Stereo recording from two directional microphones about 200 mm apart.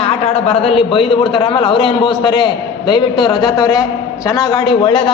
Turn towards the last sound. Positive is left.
turn(degrees=25)  # may be behind; listen again after turning